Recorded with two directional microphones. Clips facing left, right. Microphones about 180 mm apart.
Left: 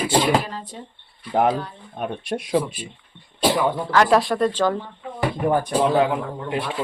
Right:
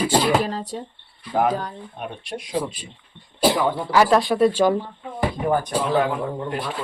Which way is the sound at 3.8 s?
10° right (ahead or behind).